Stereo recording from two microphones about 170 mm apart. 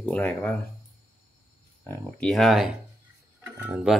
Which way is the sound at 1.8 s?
15° left (ahead or behind).